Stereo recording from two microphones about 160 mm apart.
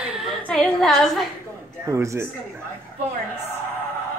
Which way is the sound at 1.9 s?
20° right (ahead or behind).